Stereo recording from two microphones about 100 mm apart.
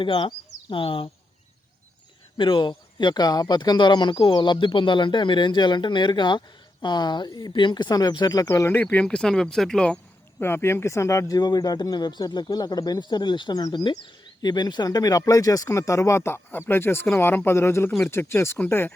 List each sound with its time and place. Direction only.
0.0 s speech: 55° left (ahead or behind)
2.4 s speech: 55° left (ahead or behind)
8.6 s speech: 20° left (ahead or behind)
10.4 s speech: 25° left (ahead or behind)